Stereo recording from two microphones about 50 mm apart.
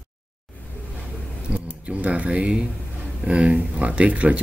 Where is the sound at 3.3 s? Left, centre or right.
Right.